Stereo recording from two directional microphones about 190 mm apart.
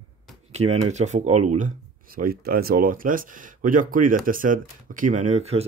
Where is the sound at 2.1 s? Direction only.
50° right (ahead or behind).